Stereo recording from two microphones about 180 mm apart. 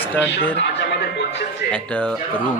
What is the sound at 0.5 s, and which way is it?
Music, 75° left (ahead or behind).